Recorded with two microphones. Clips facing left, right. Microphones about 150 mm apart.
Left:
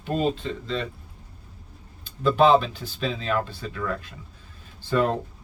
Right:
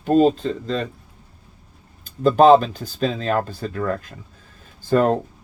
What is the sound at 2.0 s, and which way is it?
Speech, 45° right (ahead or behind).